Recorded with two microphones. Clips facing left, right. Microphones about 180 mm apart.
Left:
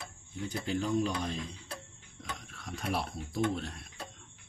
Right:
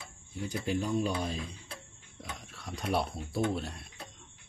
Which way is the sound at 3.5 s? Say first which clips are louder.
Right 2 dB; centre (ahead or behind).